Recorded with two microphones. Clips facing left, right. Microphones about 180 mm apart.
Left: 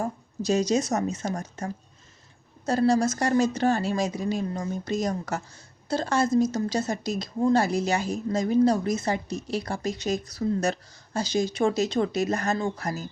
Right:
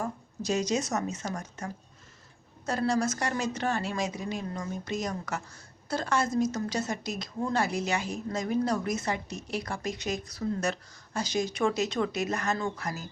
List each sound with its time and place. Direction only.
0.0 s a woman's voice: 30° left (ahead or behind)